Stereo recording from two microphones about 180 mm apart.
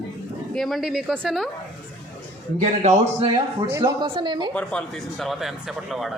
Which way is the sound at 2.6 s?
40° right (ahead or behind).